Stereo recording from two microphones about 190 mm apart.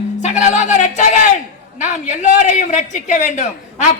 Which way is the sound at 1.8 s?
40° left (ahead or behind).